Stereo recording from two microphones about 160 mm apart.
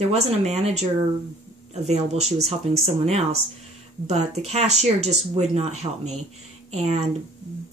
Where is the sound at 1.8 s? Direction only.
45° right (ahead or behind).